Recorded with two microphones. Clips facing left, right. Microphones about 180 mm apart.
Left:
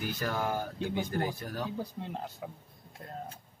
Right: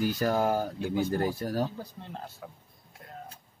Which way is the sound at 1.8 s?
15° left (ahead or behind).